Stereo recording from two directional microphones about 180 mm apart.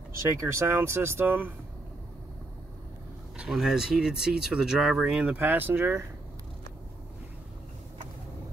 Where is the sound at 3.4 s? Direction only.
Centre (ahead or behind).